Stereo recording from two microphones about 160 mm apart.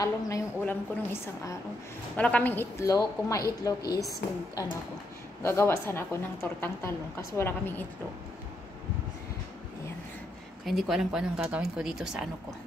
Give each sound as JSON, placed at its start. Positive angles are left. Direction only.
{"t": 0.0, "sound": "a woman's voice", "side_deg": 15}
{"t": 5.4, "sound": "a woman's voice", "side_deg": 15}
{"t": 10.6, "sound": "speech", "side_deg": 0}